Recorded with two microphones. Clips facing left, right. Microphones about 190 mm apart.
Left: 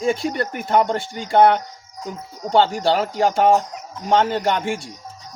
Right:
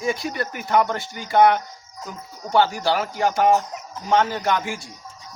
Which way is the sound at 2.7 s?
30° left (ahead or behind).